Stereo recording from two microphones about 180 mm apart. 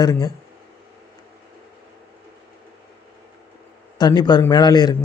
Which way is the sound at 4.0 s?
25° left (ahead or behind).